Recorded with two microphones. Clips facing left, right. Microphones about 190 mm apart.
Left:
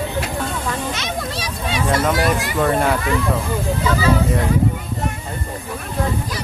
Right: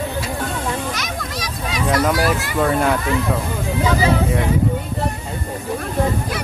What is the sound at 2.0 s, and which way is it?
Speech, centre (ahead or behind).